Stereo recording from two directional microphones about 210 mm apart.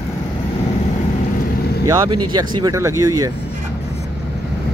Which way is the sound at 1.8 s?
15° right (ahead or behind).